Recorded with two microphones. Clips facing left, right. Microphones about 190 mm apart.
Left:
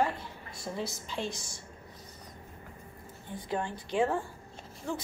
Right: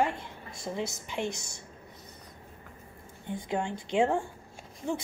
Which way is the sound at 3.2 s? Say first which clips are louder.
Right 3 dB; 20° right (ahead or behind).